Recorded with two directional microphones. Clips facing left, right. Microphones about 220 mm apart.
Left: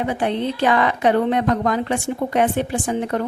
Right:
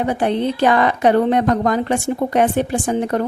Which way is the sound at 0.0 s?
40° right (ahead or behind).